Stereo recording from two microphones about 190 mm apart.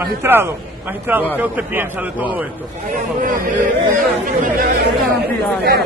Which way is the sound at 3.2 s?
45° right (ahead or behind).